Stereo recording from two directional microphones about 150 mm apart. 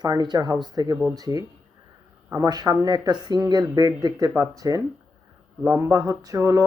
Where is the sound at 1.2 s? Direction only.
25° right (ahead or behind).